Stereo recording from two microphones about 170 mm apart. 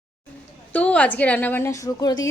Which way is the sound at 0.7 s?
10° left (ahead or behind).